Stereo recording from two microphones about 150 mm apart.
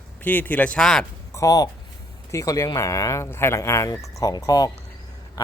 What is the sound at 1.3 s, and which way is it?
Speech, 25° left (ahead or behind).